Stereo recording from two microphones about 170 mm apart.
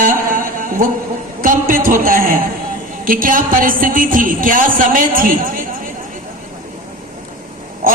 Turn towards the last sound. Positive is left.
turn(degrees=-55)  # may be behind; listen again after turning